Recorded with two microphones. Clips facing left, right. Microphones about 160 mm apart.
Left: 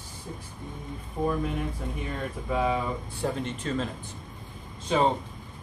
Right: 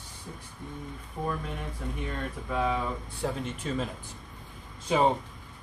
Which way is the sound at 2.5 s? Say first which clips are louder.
Left 2 dB; 5° left (ahead or behind).